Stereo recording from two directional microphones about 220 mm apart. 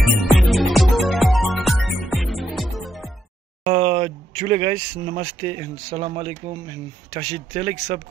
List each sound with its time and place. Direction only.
0.4 s music: centre (ahead or behind)
3.6 s speech: 30° right (ahead or behind)